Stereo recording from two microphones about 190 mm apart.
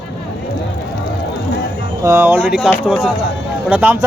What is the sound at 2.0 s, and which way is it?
Speech, 15° right (ahead or behind).